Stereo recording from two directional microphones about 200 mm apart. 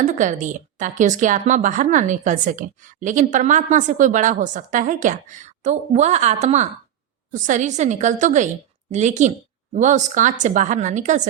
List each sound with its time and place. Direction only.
0.2 s a woman's voice: 40° right (ahead or behind)